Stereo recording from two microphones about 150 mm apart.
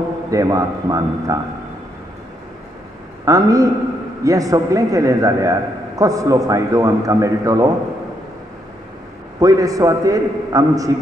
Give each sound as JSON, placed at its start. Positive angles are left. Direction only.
{"t": 0.3, "sound": "a man's voice", "side_deg": -20}
{"t": 3.3, "sound": "a man's voice", "side_deg": -20}
{"t": 9.4, "sound": "a man's voice", "side_deg": -20}